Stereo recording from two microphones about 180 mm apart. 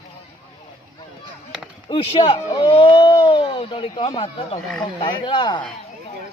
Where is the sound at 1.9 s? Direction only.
30° left (ahead or behind).